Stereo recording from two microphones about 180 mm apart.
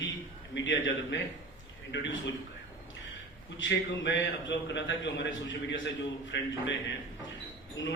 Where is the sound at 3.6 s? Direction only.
85° left.